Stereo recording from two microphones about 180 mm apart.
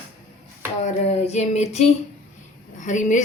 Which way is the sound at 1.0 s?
40° left (ahead or behind).